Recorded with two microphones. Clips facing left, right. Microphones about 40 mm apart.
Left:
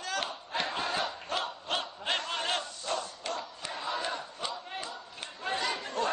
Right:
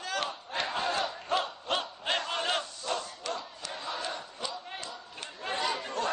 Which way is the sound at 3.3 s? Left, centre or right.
Centre.